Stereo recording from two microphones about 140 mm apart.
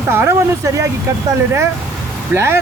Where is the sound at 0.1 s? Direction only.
15° right (ahead or behind).